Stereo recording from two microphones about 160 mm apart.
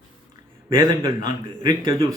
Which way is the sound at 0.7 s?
25° right (ahead or behind).